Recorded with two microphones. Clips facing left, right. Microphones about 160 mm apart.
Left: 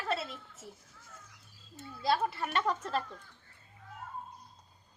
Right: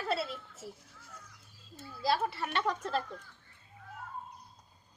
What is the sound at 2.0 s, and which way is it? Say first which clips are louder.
Speech: left 1 dB; 5° right (ahead or behind).